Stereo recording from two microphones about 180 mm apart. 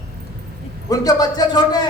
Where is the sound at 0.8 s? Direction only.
20° left (ahead or behind).